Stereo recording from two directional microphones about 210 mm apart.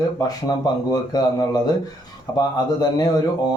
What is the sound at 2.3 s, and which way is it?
Speech, 20° left (ahead or behind).